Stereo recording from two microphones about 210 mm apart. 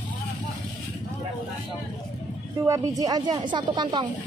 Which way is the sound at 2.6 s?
15° right (ahead or behind).